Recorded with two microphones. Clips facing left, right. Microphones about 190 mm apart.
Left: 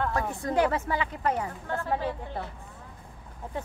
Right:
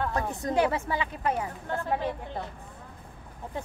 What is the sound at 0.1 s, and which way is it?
Speech, 20° right (ahead or behind).